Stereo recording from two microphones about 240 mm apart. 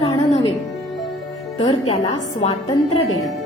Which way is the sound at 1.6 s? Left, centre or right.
Centre.